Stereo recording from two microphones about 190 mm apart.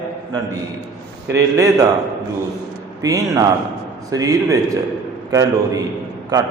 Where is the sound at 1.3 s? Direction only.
15° right (ahead or behind).